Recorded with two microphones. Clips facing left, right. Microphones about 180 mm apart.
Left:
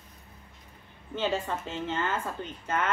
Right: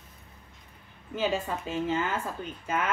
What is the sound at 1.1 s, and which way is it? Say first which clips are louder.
A woman's voice: right 1 dB; 10° right (ahead or behind).